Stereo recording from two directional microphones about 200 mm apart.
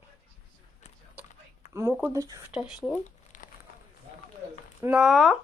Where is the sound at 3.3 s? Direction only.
40° left (ahead or behind).